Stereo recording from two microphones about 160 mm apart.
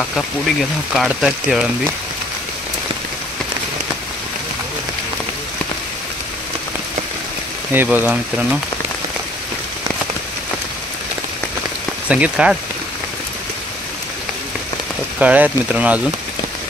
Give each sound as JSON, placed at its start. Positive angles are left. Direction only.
{"t": 0.9, "sound": "speech", "side_deg": -5}
{"t": 7.7, "sound": "speech", "side_deg": -10}
{"t": 12.1, "sound": "speech", "side_deg": -5}
{"t": 15.1, "sound": "speech", "side_deg": -10}